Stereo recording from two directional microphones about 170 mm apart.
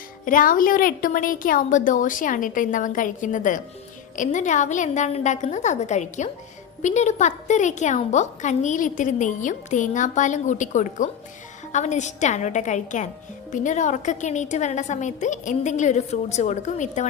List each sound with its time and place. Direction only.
0.3 s a woman's voice: 55° left (ahead or behind)